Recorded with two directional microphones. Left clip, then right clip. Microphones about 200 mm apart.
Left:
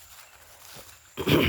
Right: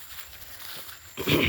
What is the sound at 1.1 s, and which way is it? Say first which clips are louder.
Dog: left 1 dB; 30° left (ahead or behind).